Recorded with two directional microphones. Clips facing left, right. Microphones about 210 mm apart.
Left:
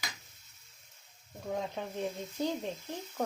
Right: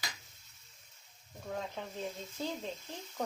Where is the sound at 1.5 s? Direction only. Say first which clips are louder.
Left 4 dB; 15° left (ahead or behind).